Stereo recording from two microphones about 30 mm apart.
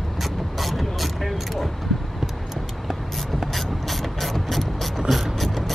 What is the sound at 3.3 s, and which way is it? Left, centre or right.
Ratchet, centre.